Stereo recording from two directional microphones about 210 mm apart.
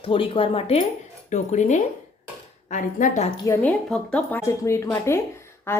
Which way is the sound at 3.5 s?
5° left (ahead or behind).